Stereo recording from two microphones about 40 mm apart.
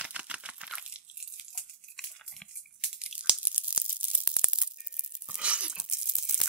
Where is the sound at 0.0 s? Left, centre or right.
Right.